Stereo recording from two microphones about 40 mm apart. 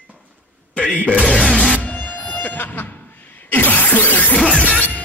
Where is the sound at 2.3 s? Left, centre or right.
Left.